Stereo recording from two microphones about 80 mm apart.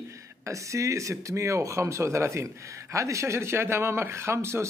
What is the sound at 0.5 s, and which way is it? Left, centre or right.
Speech, right.